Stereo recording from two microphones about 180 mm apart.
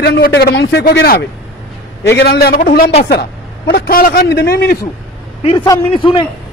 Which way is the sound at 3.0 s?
65° left (ahead or behind).